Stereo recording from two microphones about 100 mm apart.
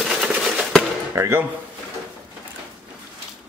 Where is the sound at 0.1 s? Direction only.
5° right (ahead or behind).